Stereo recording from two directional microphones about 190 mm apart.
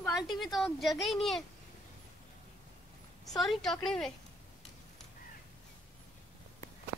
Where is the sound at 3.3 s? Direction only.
Centre (ahead or behind).